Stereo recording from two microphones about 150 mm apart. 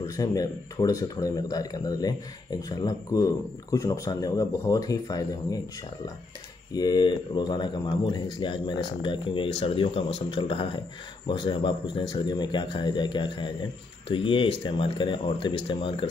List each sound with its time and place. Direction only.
0.0 s speech: 20° left (ahead or behind)
6.7 s speech: 25° left (ahead or behind)